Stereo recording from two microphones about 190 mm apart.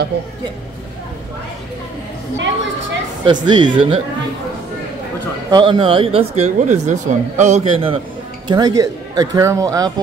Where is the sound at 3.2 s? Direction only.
25° right (ahead or behind).